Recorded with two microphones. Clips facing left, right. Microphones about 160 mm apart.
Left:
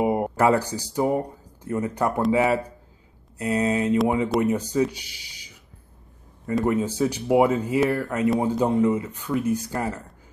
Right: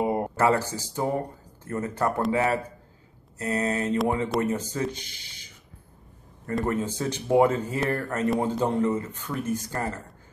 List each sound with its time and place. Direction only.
0.0 s speech: 15° left (ahead or behind)